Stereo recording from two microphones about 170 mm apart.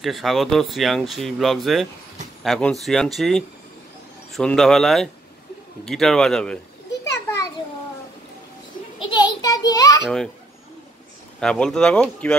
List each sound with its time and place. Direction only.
0.0 s speech: centre (ahead or behind)
9.1 s a sound: 25° left (ahead or behind)
10.0 s speech: 5° left (ahead or behind)
11.3 s speech: 5° left (ahead or behind)